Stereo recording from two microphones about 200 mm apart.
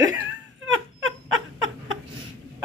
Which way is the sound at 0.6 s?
85° right.